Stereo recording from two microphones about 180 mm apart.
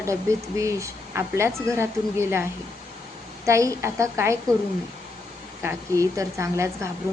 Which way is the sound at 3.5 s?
15° right (ahead or behind).